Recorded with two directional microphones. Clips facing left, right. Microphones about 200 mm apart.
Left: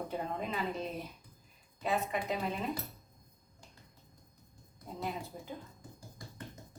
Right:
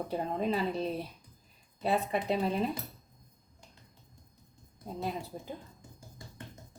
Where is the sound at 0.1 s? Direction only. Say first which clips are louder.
Right 6 dB; 35° right (ahead or behind).